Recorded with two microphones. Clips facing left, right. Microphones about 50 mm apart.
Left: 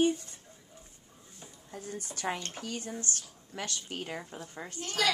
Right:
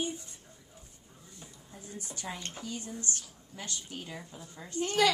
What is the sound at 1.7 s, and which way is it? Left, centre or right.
Speech, left.